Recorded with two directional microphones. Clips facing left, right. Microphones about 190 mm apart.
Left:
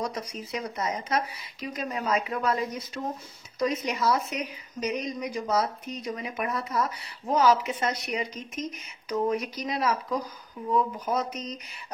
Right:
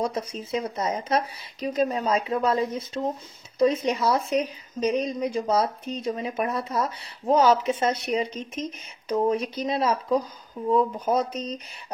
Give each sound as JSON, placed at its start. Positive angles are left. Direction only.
{"t": 0.0, "sound": "a woman's voice", "side_deg": -25}